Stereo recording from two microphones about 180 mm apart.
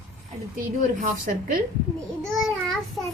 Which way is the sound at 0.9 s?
50° right (ahead or behind).